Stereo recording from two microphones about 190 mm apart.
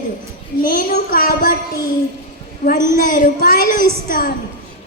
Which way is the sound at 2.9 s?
45° left (ahead or behind).